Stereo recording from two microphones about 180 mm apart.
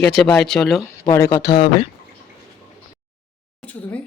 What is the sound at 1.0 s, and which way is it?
Speech, 15° left (ahead or behind).